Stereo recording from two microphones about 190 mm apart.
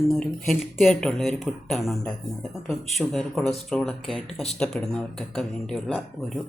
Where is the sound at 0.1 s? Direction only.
Centre (ahead or behind).